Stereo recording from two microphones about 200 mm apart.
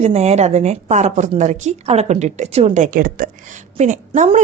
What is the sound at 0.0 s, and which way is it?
A woman's voice, 35° right (ahead or behind).